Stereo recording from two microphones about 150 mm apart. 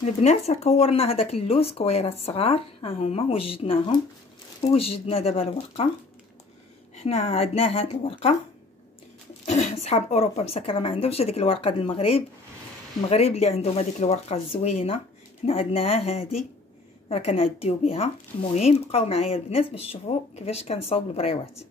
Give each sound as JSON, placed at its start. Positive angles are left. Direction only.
{"t": 0.0, "sound": "speech", "side_deg": 50}
{"t": 7.0, "sound": "speech", "side_deg": 50}
{"t": 9.5, "sound": "speech", "side_deg": 50}